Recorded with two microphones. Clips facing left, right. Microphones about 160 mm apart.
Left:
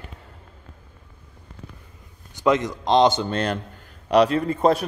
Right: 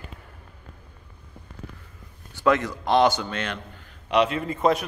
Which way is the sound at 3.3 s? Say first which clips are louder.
Left 6 dB; 35° left (ahead or behind).